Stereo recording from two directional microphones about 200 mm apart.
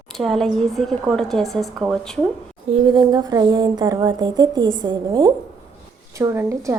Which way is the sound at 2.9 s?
20° right (ahead or behind).